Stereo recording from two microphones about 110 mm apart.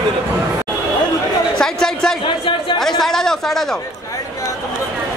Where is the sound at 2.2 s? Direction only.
50° left (ahead or behind).